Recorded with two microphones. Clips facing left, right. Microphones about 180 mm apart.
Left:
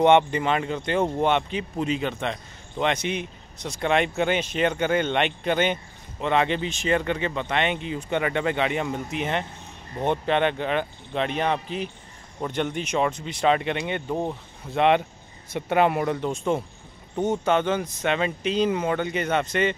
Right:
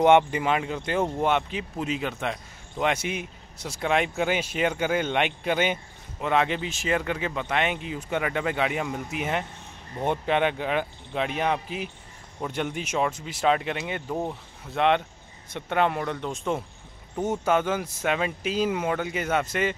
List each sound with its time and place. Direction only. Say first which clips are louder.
0.0 s a man's voice: left 1 dB; 5° right (ahead or behind)